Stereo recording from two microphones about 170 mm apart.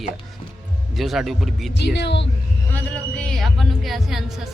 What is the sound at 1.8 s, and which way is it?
Speech, 90° left.